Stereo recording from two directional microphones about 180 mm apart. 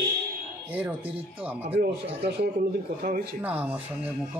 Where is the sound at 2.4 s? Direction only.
50° right (ahead or behind).